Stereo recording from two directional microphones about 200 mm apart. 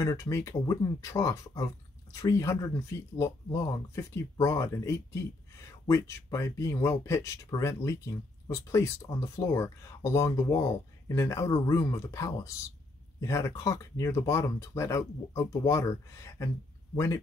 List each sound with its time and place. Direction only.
0.0 s speech: 15° left (ahead or behind)